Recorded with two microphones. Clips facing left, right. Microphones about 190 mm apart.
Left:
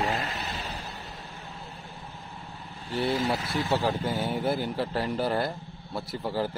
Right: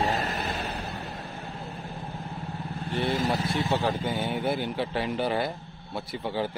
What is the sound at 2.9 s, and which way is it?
Speech, 50° right (ahead or behind).